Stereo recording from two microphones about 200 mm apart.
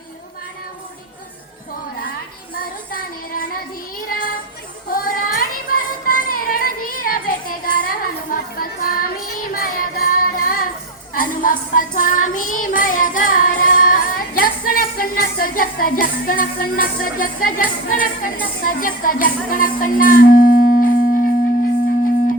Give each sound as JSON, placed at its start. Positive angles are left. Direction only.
{"t": 2.6, "sound": "child singing", "side_deg": 45}
{"t": 4.9, "sound": "music", "side_deg": 45}
{"t": 9.5, "sound": "child singing", "side_deg": 45}